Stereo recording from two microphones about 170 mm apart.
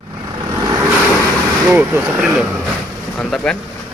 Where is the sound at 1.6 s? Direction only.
10° right (ahead or behind).